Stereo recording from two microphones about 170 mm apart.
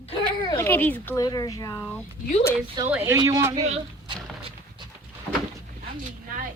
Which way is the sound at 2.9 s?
15° right (ahead or behind).